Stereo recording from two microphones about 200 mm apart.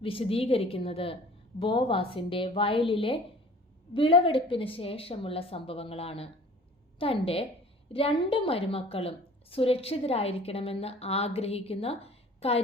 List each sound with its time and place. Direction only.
0.0 s a woman's voice: 30° left (ahead or behind)